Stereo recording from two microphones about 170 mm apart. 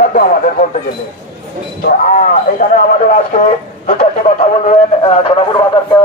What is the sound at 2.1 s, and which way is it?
Speech, 50° left (ahead or behind).